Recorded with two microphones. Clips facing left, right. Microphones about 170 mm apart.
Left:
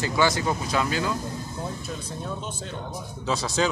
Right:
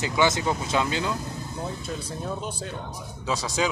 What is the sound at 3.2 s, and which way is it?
Speech, 10° right (ahead or behind).